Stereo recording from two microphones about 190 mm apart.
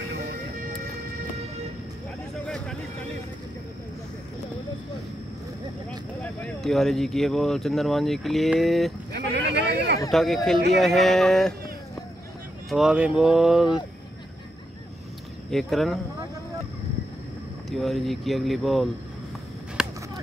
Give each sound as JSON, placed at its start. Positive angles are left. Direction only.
{"t": 0.3, "sound": "music", "side_deg": -50}
{"t": 2.4, "sound": "a sound", "side_deg": 5}
{"t": 5.9, "sound": "speech", "side_deg": 5}
{"t": 9.1, "sound": "a sound", "side_deg": -65}
{"t": 10.1, "sound": "speech", "side_deg": 0}
{"t": 12.6, "sound": "speech", "side_deg": 0}
{"t": 15.5, "sound": "speech", "side_deg": 0}
{"t": 17.6, "sound": "speech", "side_deg": 0}
{"t": 19.8, "sound": "whip", "side_deg": -5}